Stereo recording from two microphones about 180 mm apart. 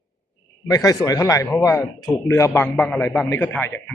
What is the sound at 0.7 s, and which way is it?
A man's voice, 20° left (ahead or behind).